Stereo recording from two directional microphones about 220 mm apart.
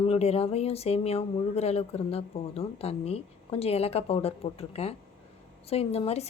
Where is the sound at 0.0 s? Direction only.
25° left (ahead or behind).